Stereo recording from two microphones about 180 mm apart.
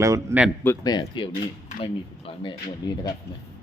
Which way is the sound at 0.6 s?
10° left (ahead or behind).